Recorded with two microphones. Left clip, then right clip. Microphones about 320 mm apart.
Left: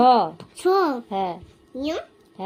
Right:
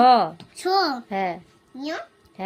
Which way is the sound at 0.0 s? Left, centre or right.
Right.